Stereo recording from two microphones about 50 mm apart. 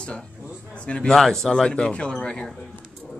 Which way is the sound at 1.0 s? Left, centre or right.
Centre.